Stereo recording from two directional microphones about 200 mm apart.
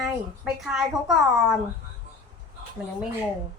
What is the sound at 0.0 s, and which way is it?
A woman's voice, centre (ahead or behind).